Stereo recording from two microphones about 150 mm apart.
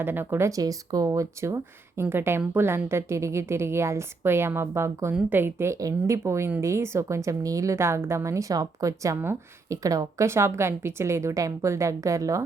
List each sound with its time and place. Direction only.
0.0 s a woman's voice: 15° right (ahead or behind)